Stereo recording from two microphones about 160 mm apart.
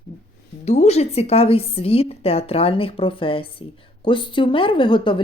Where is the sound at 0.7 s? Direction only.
45° left (ahead or behind).